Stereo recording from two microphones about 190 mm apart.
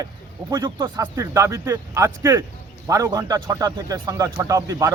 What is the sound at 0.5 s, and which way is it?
Speech, 20° right (ahead or behind).